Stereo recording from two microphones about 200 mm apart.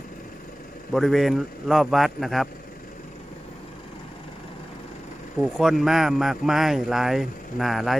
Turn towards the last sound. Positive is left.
turn(degrees=0)  # may be behind; listen again after turning